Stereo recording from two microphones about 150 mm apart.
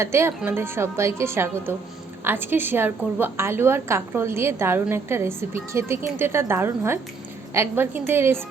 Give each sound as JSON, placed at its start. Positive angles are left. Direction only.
{"t": 0.0, "sound": "a woman's voice", "side_deg": -15}